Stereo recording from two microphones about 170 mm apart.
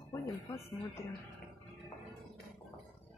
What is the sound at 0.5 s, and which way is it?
Speech, 15° left (ahead or behind).